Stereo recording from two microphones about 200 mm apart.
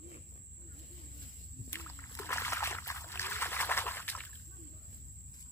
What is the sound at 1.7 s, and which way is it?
Rowboat, 10° left (ahead or behind).